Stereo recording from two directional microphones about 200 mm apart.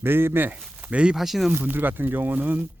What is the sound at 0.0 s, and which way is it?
Speech, 10° right (ahead or behind).